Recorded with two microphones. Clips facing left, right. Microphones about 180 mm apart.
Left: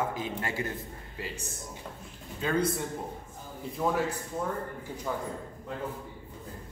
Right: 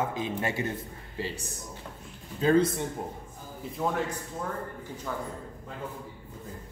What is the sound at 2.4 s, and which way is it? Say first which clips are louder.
Speech: right 6 dB; 30° right (ahead or behind).